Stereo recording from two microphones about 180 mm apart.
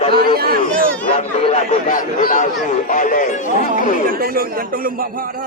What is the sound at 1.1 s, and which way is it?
Speech, 35° left (ahead or behind).